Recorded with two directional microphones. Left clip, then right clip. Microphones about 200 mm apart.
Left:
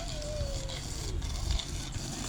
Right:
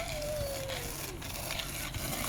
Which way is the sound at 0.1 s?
5° right (ahead or behind).